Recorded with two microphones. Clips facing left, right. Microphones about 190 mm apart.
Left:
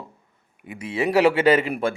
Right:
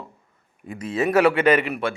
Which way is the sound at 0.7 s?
15° left (ahead or behind).